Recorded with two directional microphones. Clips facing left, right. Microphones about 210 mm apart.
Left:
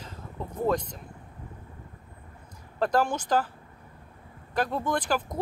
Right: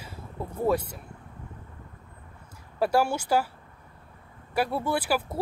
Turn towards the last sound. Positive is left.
turn(degrees=-10)  # may be behind; listen again after turning